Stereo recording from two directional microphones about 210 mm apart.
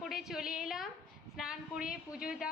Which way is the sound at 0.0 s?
Centre (ahead or behind).